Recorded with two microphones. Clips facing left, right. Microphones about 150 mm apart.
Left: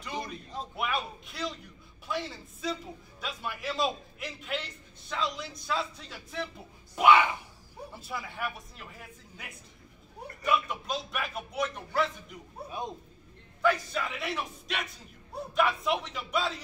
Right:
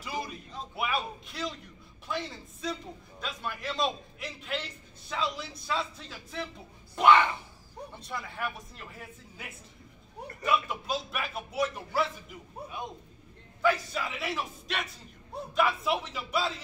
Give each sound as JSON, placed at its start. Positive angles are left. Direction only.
{"t": 0.0, "sound": "a sound", "side_deg": -5}
{"t": 3.2, "sound": "a man's voice", "side_deg": 5}
{"t": 13.6, "sound": "a man's voice", "side_deg": -5}